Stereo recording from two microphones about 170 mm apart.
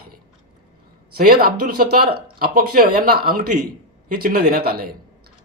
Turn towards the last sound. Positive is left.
turn(degrees=-65)  # may be behind; listen again after turning